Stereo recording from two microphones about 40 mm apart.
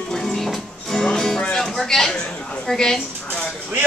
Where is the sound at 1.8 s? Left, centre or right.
Centre.